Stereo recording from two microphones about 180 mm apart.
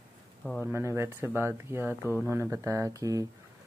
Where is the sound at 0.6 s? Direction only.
10° right (ahead or behind).